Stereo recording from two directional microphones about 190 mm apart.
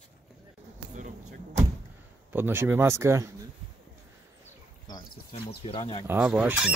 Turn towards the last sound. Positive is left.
turn(degrees=-5)  # may be behind; listen again after turning